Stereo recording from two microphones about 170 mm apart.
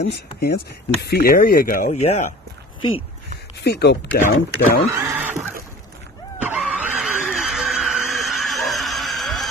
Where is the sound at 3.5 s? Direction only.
75° left (ahead or behind).